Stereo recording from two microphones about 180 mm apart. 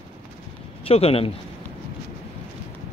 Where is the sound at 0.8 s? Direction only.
30° left (ahead or behind).